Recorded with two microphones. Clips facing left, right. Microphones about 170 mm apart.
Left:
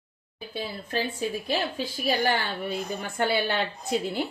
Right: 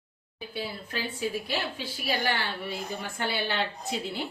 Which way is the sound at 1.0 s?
40° left (ahead or behind).